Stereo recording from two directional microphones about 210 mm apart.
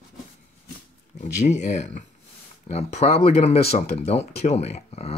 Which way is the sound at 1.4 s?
35° left (ahead or behind).